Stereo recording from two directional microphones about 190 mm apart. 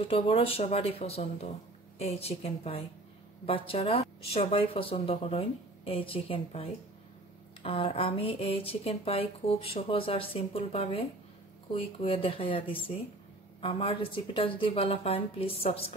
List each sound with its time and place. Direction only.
0.0 s speech: 30° left (ahead or behind)